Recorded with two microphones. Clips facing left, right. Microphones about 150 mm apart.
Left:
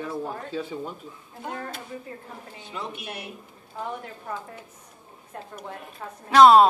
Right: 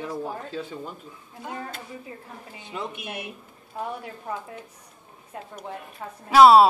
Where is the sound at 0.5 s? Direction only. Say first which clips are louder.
Left 2 dB; 5° left (ahead or behind).